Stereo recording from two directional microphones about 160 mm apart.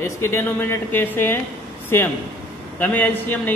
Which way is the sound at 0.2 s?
15° left (ahead or behind).